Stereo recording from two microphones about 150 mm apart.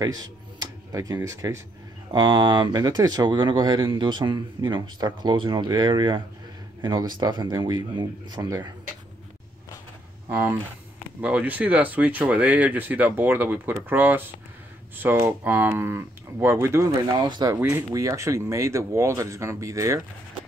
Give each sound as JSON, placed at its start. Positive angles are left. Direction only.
{"t": 0.0, "sound": "speech", "side_deg": -25}
{"t": 11.1, "sound": "speech", "side_deg": -10}